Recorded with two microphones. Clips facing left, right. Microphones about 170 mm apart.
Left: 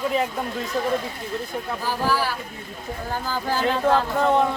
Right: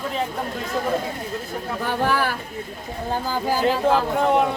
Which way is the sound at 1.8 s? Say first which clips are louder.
Right 2 dB; 60° right (ahead or behind).